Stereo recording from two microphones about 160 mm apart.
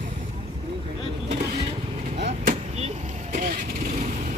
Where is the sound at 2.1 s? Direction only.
45° right (ahead or behind).